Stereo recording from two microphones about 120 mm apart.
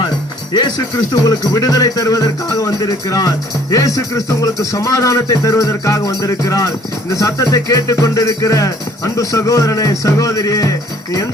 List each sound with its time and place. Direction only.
1.1 s music: 30° left (ahead or behind)